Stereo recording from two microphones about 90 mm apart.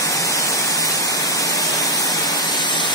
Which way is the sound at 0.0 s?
40° left (ahead or behind).